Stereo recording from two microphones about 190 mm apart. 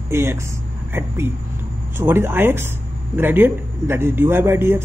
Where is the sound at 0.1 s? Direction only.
15° right (ahead or behind).